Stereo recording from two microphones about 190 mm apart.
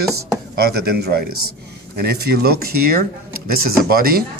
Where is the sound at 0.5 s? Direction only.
55° right (ahead or behind).